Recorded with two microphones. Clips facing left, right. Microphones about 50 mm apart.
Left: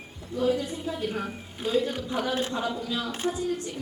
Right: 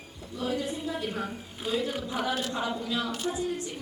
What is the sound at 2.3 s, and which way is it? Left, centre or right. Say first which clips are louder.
Speech: left 2 dB; left.